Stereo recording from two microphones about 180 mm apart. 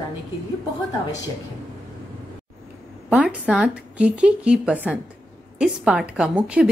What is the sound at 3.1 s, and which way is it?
A woman's voice, 5° right (ahead or behind).